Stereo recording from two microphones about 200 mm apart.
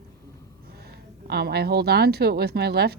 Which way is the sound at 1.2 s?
55° right (ahead or behind).